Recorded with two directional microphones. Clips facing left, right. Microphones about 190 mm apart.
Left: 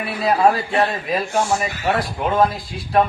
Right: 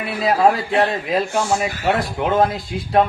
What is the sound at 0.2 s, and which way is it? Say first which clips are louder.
Speech: right 1 dB; 20° right (ahead or behind).